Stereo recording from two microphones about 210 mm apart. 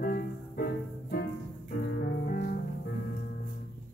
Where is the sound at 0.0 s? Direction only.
45° left (ahead or behind).